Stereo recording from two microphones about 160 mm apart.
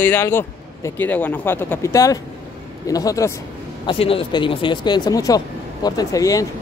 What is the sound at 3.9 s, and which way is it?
Speech, 35° left (ahead or behind).